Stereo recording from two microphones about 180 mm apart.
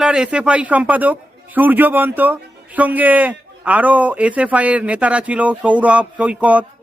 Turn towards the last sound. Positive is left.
turn(degrees=-10)  # may be behind; listen again after turning